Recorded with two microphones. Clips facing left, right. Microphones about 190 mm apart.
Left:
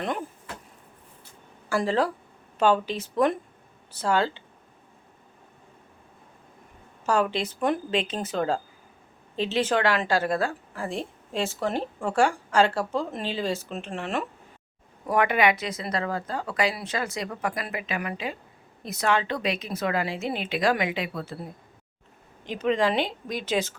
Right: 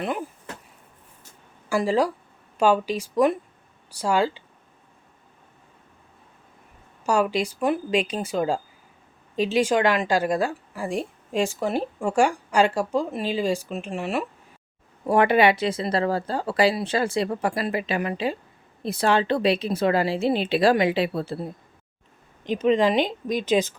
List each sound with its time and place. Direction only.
0.0 s a woman's voice: 5° right (ahead or behind)
1.7 s a woman's voice: 10° right (ahead or behind)
7.0 s a woman's voice: 10° right (ahead or behind)
15.0 s a woman's voice: 30° right (ahead or behind)